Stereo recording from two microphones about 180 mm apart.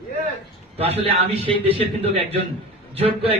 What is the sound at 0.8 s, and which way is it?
A man's voice, 35° right (ahead or behind).